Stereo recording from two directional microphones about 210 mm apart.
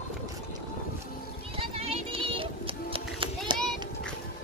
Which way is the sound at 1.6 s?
25° right (ahead or behind).